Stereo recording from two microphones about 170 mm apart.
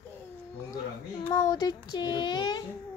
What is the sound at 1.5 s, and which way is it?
Speech, 25° left (ahead or behind).